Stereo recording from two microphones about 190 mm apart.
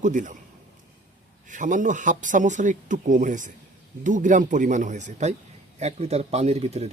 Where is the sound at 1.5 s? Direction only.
40° right (ahead or behind).